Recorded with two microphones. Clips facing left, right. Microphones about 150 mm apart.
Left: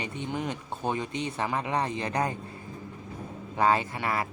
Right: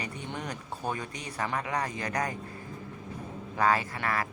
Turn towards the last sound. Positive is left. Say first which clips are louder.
# left 2 dB
turn(degrees=25)  # may be behind; listen again after turning